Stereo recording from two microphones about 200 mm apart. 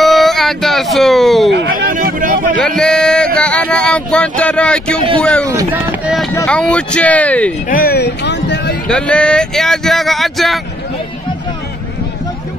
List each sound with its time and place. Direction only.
0.0 s music: centre (ahead or behind)
1.7 s a sound: 45° right (ahead or behind)
2.6 s speech: 5° left (ahead or behind)
5.5 s speech: 10° right (ahead or behind)
6.3 s speech: 10° left (ahead or behind)
7.7 s speech: 50° left (ahead or behind)
8.8 s speech: 5° left (ahead or behind)